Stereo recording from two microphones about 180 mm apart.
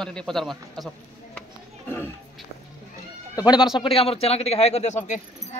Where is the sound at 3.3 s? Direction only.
20° left (ahead or behind).